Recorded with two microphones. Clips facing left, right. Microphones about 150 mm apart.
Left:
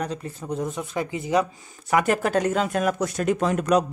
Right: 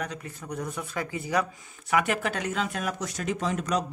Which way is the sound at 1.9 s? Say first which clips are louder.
Left 5 dB; 40° left (ahead or behind).